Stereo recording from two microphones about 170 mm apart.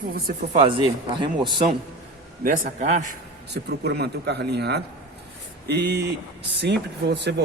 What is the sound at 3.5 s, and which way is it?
Speech, 75° right (ahead or behind).